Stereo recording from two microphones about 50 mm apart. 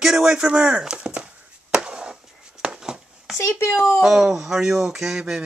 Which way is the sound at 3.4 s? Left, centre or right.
Left.